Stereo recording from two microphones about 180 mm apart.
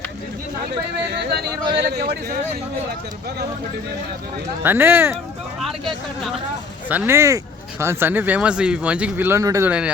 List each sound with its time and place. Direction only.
1.2 s speech: 65° right (ahead or behind)
4.6 s speech: 10° right (ahead or behind)
6.8 s speech: 10° right (ahead or behind)